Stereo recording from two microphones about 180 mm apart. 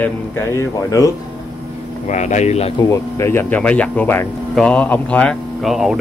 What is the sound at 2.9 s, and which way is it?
Speech, 15° left (ahead or behind).